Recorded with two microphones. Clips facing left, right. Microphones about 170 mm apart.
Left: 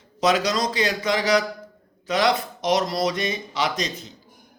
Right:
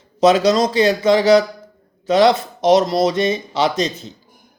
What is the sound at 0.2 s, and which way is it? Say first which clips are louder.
A man's voice: right 8 dB; 25° right (ahead or behind).